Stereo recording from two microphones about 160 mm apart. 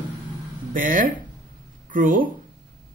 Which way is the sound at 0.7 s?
60° right (ahead or behind).